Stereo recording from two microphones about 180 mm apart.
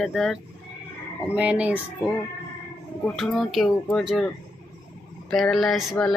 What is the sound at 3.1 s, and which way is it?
Music, centre (ahead or behind).